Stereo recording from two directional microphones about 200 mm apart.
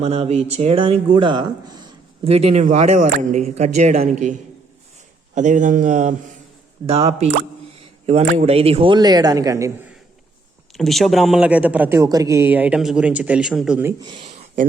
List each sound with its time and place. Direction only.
0.0 s a man's voice: 30° right (ahead or behind); by 9.7 s 15° right (ahead or behind)
10.8 s speech: centre (ahead or behind)
14.0 s a man's voice: 25° right (ahead or behind)